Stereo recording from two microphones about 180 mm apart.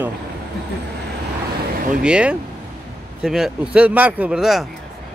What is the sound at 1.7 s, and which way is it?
Vehicle, 50° right (ahead or behind).